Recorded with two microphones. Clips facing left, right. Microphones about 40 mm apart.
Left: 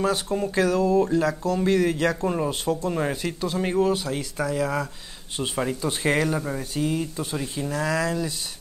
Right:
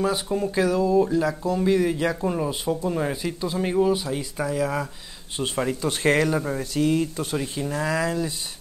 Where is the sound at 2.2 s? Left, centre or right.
Centre.